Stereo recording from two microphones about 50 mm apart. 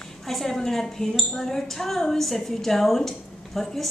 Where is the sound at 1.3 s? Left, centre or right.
Centre.